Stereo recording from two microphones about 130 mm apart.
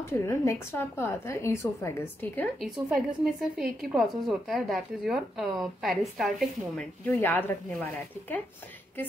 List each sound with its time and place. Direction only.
0.3 s a woman's voice: 20° left (ahead or behind)
2.9 s a woman's voice: 5° right (ahead or behind)
7.1 s speech: 15° left (ahead or behind)